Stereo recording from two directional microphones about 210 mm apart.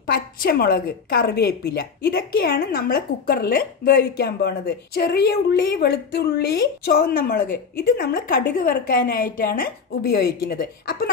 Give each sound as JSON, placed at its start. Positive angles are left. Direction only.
{"t": 0.0, "sound": "a woman's voice", "side_deg": 45}